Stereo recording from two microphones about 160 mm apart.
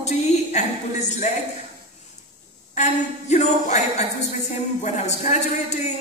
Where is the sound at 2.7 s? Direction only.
45° left (ahead or behind).